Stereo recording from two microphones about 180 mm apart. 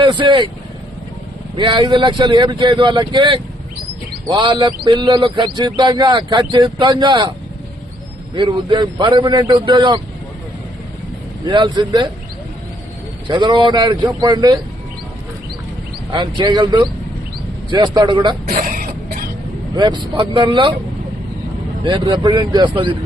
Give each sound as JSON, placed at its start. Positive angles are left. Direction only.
{"t": 0.0, "sound": "a man's voice", "side_deg": -25}
{"t": 1.5, "sound": "a man's voice", "side_deg": -25}
{"t": 8.4, "sound": "a man's voice", "side_deg": -25}
{"t": 11.4, "sound": "a man's voice", "side_deg": -25}
{"t": 13.2, "sound": "a man's voice", "side_deg": -25}
{"t": 16.1, "sound": "a man's voice", "side_deg": -25}
{"t": 18.4, "sound": "throat clearing", "side_deg": -55}
{"t": 19.7, "sound": "a man's voice", "side_deg": -25}
{"t": 21.8, "sound": "a man's voice", "side_deg": -25}